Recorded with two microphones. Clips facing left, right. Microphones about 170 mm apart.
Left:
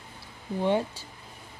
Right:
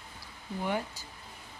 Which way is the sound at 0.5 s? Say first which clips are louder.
Left 7 dB; 25° left (ahead or behind).